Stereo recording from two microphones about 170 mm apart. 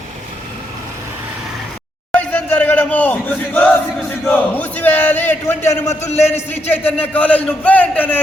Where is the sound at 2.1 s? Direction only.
10° left (ahead or behind).